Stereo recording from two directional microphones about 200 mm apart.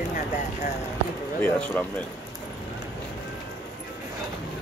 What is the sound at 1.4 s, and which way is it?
Speech, 10° left (ahead or behind).